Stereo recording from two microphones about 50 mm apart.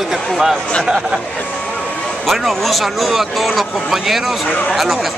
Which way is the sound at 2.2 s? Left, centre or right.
Centre.